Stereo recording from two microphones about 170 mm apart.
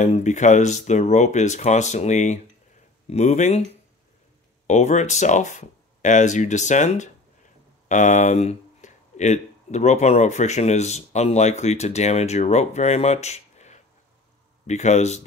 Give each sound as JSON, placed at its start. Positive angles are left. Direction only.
{"t": 0.0, "sound": "speech", "side_deg": 45}
{"t": 4.6, "sound": "speech", "side_deg": 45}